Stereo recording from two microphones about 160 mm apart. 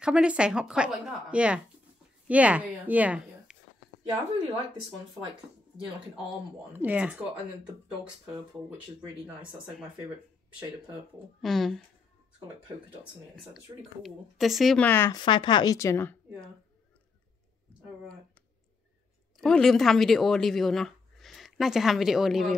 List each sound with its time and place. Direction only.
0.0 s a woman's voice: 5° right (ahead or behind)
6.7 s speech: 10° right (ahead or behind)
11.4 s a woman's voice: centre (ahead or behind)
13.0 s a woman's voice: centre (ahead or behind)
15.1 s a woman's voice: 30° left (ahead or behind)
19.3 s speech: centre (ahead or behind)